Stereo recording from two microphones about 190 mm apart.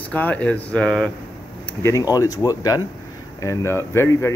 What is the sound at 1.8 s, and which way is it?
Speech, 20° left (ahead or behind).